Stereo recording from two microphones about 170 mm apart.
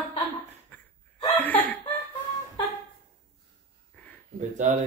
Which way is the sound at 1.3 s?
10° left (ahead or behind).